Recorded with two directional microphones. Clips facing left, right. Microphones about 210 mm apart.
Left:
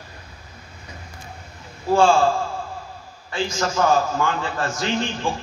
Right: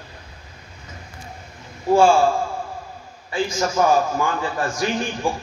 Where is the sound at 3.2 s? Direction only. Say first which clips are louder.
Right 2 dB; 10° right (ahead or behind).